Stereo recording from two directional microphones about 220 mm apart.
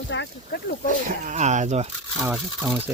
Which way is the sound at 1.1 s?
35° right (ahead or behind).